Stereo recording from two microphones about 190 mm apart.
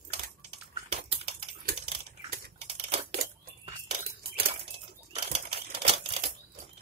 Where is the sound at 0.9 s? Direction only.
30° right (ahead or behind).